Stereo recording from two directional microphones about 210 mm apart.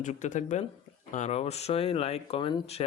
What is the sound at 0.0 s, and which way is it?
Speech, 35° left (ahead or behind).